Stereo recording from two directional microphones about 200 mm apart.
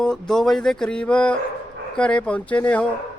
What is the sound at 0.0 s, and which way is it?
Speech, centre (ahead or behind).